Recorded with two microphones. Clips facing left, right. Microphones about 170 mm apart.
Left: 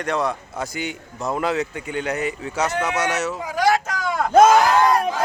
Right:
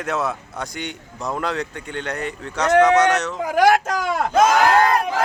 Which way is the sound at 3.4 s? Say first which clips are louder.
Right 5 dB; 55° right (ahead or behind).